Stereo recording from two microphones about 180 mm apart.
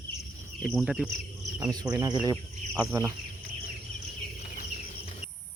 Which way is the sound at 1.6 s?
20° right (ahead or behind).